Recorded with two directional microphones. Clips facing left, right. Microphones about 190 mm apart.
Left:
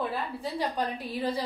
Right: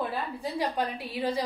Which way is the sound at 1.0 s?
10° right (ahead or behind).